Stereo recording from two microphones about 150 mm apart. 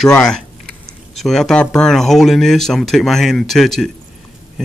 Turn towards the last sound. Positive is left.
turn(degrees=0)  # may be behind; listen again after turning